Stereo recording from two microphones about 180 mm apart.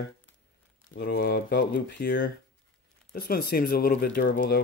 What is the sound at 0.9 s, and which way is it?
Speech, 60° left (ahead or behind).